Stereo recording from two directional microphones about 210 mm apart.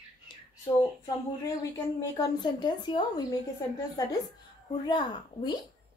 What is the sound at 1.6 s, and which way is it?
Speech, 15° left (ahead or behind).